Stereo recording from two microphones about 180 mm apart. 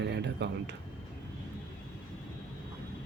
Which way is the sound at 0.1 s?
70° right (ahead or behind).